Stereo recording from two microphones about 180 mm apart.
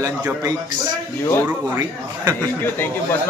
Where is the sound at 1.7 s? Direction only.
15° right (ahead or behind).